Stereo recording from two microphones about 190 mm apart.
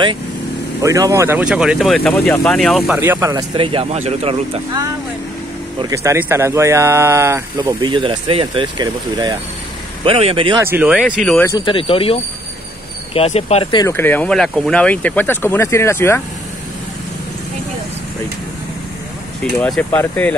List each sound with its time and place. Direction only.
0.8 s speech: 15° right (ahead or behind); by 3.0 s centre (ahead or behind)
3.0 s speech: 15° right (ahead or behind); by 4.4 s 30° right (ahead or behind)
5.8 s speech: 15° right (ahead or behind)
10.6 s speech: 10° right (ahead or behind)
11.4 s speech: 25° left (ahead or behind)
13.8 s speech: 10° left (ahead or behind)
19.6 s speech: 10° left (ahead or behind)